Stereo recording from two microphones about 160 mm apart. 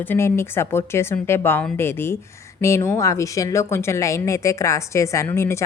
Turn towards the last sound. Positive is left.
turn(degrees=15)  # may be behind; listen again after turning